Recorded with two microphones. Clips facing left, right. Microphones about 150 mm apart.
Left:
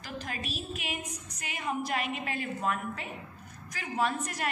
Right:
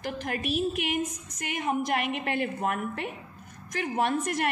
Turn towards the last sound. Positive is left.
turn(degrees=-60)  # may be behind; listen again after turning